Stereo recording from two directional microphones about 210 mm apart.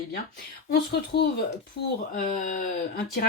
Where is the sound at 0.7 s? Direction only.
55° left (ahead or behind).